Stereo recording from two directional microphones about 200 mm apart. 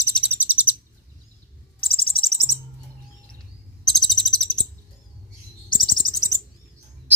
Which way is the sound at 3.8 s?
Centre (ahead or behind).